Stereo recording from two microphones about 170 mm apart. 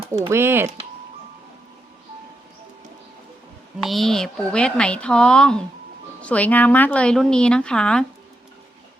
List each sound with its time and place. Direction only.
0.3 s speech: 15° right (ahead or behind)
3.8 s speech: centre (ahead or behind)